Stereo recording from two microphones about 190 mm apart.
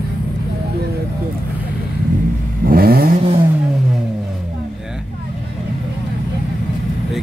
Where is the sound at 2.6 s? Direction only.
50° right (ahead or behind).